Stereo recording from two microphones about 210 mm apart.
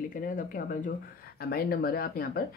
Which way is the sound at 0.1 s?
40° left (ahead or behind).